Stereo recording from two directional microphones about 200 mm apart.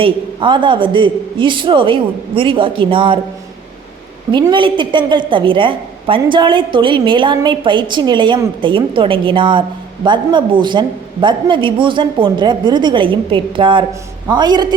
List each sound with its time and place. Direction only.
0.0 s a woman's voice: 25° right (ahead or behind)
4.3 s a woman's voice: 25° right (ahead or behind)